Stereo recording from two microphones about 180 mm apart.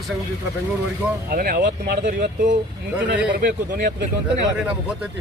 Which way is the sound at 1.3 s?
55° right (ahead or behind).